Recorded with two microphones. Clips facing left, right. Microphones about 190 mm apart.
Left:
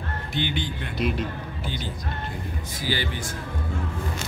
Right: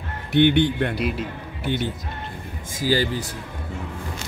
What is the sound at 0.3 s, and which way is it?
Speech, 60° right (ahead or behind).